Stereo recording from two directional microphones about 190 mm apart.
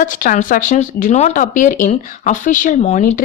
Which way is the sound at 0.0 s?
45° left (ahead or behind).